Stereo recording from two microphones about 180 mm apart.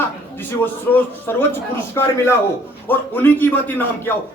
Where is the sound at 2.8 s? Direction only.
10° left (ahead or behind).